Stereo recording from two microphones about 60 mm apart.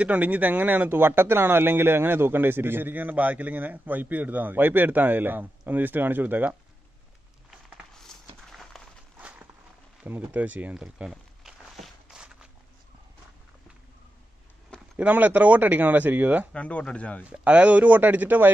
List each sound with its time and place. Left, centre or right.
0.0 s speech: right
7.9 s a sound: centre
10.0 s speech: right
10.7 s speech: centre
11.1 s a sound: centre
12.1 s walk: centre
15.0 s speech: right
16.5 s speech: left
17.2 s speech: right